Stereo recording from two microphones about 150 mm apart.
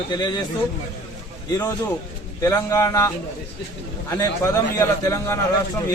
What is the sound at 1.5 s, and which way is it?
A man's voice, 25° left (ahead or behind).